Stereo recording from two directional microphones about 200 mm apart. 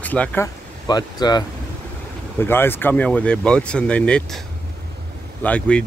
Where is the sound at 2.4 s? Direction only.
10° left (ahead or behind).